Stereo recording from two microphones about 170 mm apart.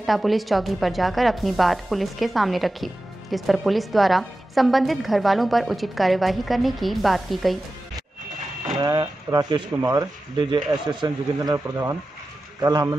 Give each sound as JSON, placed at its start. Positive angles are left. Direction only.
{"t": 0.0, "sound": "speech", "side_deg": 0}
{"t": 8.7, "sound": "speech", "side_deg": -20}